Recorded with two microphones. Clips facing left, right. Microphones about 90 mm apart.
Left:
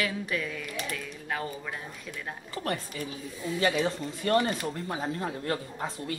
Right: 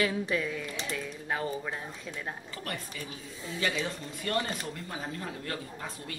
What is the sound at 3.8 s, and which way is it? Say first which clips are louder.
Speech: left 6 dB; 30° left (ahead or behind).